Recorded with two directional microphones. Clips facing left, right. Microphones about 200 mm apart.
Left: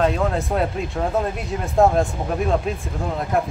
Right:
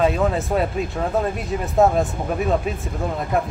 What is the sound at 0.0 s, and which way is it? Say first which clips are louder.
Speech: right 1 dB; 5° right (ahead or behind).